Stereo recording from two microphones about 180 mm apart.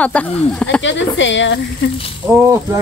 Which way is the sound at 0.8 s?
90° left.